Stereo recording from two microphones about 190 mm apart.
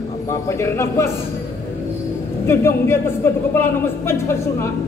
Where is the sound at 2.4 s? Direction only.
10° left (ahead or behind).